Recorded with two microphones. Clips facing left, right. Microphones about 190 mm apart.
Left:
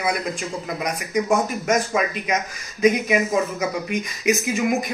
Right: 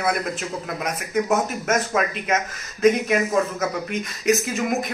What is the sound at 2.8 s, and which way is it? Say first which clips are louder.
Speech: even; centre (ahead or behind).